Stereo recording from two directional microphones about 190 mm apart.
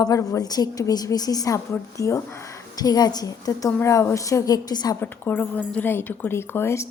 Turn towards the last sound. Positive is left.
turn(degrees=15)  # may be behind; listen again after turning